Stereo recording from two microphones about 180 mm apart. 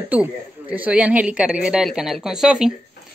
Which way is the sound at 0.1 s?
10° right (ahead or behind).